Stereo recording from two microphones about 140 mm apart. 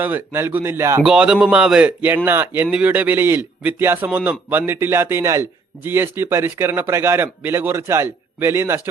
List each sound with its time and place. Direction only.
0.0 s speech: 15° right (ahead or behind)
1.0 s speech: 5° right (ahead or behind)